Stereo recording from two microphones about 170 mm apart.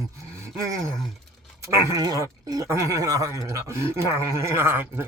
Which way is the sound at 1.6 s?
20° right (ahead or behind).